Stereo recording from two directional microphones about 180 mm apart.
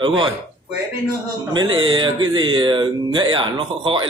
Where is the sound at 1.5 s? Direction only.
25° right (ahead or behind).